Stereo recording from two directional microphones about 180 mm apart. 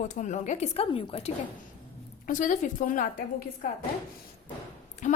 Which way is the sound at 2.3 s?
45° left (ahead or behind).